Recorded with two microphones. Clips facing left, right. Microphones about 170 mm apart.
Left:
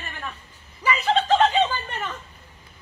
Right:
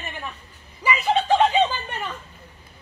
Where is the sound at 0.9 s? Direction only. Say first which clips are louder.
Even; 10° right (ahead or behind).